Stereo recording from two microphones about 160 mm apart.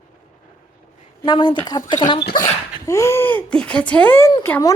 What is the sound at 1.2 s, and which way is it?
A woman's voice, 30° left (ahead or behind).